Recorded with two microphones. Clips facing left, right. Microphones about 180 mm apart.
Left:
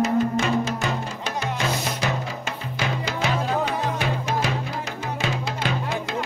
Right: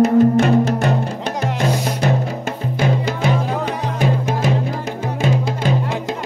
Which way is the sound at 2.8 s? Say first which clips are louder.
Right 7 dB; 50° right (ahead or behind).